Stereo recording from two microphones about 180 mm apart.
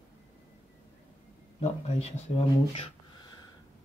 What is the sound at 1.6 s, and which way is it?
Speech, 35° left (ahead or behind).